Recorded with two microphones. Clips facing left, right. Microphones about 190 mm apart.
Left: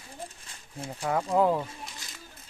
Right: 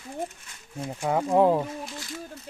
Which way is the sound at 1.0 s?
20° right (ahead or behind).